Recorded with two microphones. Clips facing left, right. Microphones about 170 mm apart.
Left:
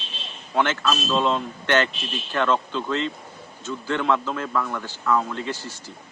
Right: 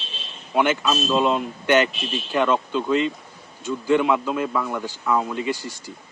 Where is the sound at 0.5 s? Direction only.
10° right (ahead or behind).